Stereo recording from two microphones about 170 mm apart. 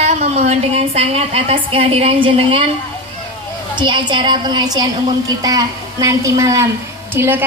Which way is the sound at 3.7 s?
25° right (ahead or behind).